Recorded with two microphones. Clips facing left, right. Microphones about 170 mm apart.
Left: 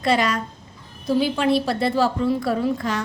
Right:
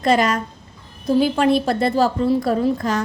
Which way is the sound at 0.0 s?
45° right (ahead or behind).